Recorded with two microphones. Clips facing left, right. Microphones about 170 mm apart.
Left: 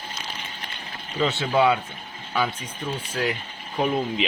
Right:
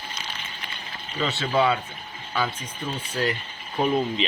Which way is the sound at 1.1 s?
10° left (ahead or behind).